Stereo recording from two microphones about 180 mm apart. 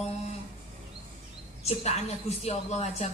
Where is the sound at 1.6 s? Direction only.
35° left (ahead or behind).